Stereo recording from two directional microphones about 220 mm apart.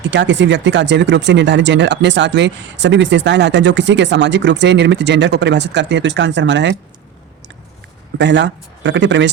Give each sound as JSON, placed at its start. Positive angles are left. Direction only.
{"t": 0.0, "sound": "speech", "side_deg": -55}
{"t": 8.2, "sound": "speech", "side_deg": -50}